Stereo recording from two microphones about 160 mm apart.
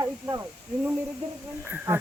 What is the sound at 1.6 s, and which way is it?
Speech, 15° right (ahead or behind).